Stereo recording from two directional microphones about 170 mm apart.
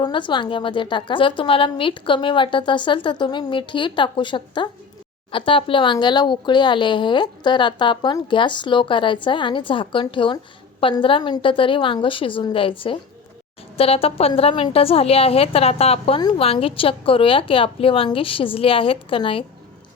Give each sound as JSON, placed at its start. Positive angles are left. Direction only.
{"t": 0.0, "sound": "a woman's voice", "side_deg": 30}